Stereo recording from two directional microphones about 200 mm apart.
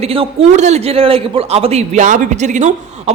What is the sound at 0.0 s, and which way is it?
Speech, 30° right (ahead or behind).